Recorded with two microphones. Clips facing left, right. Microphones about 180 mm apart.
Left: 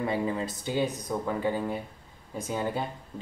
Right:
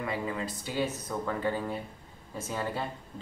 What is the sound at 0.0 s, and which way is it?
Speech, 30° left (ahead or behind).